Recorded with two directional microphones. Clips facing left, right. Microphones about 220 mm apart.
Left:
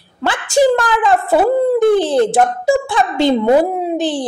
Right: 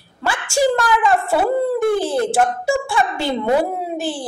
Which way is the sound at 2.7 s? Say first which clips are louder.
Left 4 dB; 20° left (ahead or behind).